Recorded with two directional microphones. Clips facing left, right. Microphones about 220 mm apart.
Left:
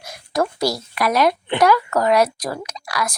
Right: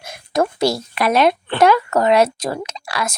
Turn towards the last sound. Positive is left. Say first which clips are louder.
# right 1 dB
turn(degrees=-25)  # may be behind; listen again after turning